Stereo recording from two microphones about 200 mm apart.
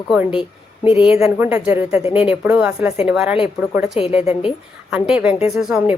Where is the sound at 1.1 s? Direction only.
5° right (ahead or behind).